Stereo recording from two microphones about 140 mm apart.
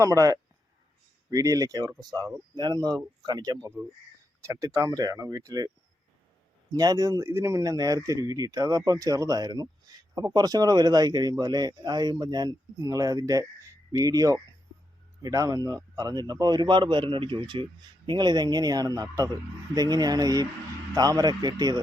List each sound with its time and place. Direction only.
0.0 s speech: 25° right (ahead or behind)